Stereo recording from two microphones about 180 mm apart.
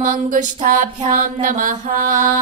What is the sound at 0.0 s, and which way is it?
Mantra, 45° right (ahead or behind).